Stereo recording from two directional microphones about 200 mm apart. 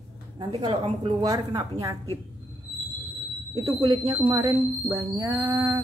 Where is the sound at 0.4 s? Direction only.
20° right (ahead or behind).